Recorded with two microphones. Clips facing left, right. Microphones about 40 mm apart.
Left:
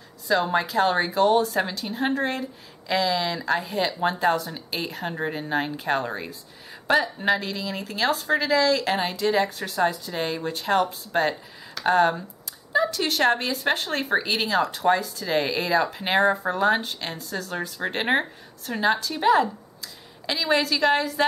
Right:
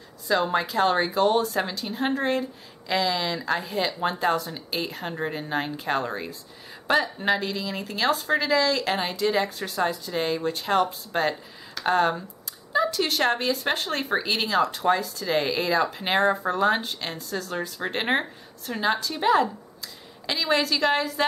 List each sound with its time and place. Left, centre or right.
0.3 s speech: centre